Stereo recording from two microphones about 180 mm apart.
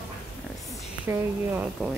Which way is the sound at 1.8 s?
5° right (ahead or behind).